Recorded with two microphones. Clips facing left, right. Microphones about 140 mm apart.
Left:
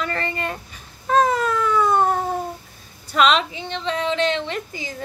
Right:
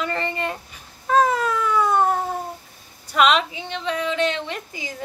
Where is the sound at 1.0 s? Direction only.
10° right (ahead or behind).